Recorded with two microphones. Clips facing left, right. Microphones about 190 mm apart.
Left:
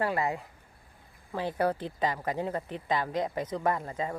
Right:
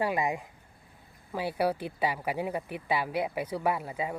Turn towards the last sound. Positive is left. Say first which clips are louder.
# even
turn(degrees=-10)  # may be behind; listen again after turning